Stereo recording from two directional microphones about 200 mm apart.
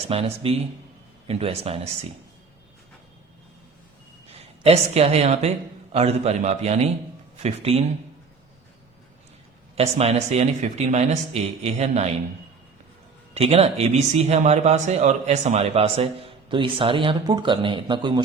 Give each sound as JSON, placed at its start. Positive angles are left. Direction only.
{"t": 0.1, "sound": "speech", "side_deg": -30}
{"t": 4.3, "sound": "speech", "side_deg": -30}
{"t": 9.7, "sound": "speech", "side_deg": -30}
{"t": 13.3, "sound": "speech", "side_deg": -30}